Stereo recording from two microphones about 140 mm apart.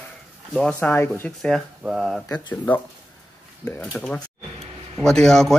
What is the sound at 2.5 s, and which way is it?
Speech, 15° left (ahead or behind).